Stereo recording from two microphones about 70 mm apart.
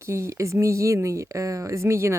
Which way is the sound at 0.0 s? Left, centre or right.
Right.